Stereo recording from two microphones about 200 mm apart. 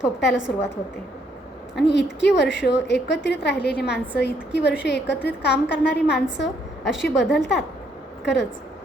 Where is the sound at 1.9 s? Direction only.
60° left (ahead or behind).